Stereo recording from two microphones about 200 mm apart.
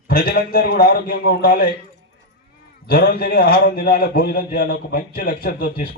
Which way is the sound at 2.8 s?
50° left (ahead or behind).